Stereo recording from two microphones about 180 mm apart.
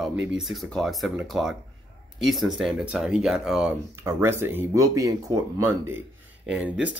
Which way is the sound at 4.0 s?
15° right (ahead or behind).